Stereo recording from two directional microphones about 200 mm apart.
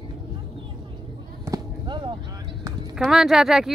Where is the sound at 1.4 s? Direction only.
20° right (ahead or behind).